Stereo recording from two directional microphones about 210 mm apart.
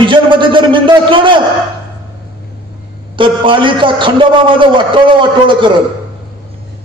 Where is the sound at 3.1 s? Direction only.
25° right (ahead or behind).